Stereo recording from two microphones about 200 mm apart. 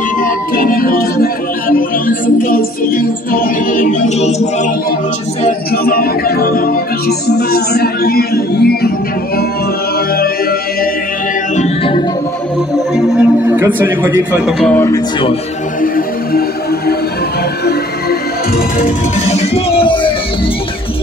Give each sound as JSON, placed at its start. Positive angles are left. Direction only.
{"t": 0.2, "sound": "speech", "side_deg": 45}
{"t": 5.7, "sound": "music", "side_deg": 50}
{"t": 11.5, "sound": "music", "side_deg": 30}
{"t": 12.7, "sound": "speech", "side_deg": 0}
{"t": 14.7, "sound": "music", "side_deg": 15}
{"t": 18.8, "sound": "speech", "side_deg": 30}